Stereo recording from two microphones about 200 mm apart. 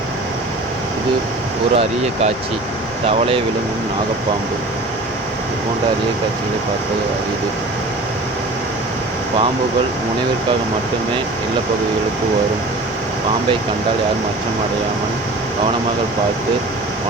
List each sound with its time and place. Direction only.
1.7 s speech: 30° right (ahead or behind)